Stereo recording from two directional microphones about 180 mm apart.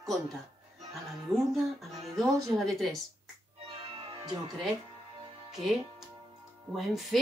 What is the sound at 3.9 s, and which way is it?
Music, 30° right (ahead or behind).